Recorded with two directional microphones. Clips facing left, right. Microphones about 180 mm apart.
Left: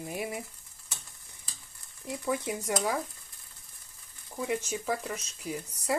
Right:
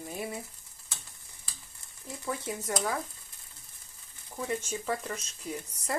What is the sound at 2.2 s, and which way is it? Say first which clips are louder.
Speech: left 3 dB; 15° left (ahead or behind).